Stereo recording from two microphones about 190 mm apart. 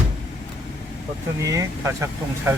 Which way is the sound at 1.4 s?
15° right (ahead or behind).